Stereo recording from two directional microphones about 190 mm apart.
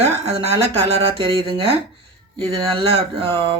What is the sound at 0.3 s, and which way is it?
Speech, 30° right (ahead or behind).